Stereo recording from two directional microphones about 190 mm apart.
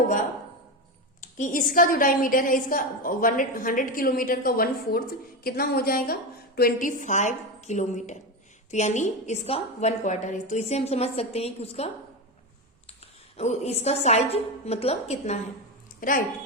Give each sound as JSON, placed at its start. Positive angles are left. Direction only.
{"t": 1.2, "sound": "a woman's voice", "side_deg": 40}
{"t": 12.9, "sound": "a woman's voice", "side_deg": 35}
{"t": 16.0, "sound": "a woman's voice", "side_deg": 45}